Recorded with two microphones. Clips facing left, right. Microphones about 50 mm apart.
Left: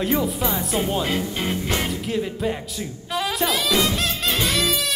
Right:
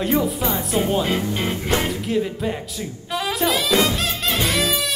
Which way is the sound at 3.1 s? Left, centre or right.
Centre.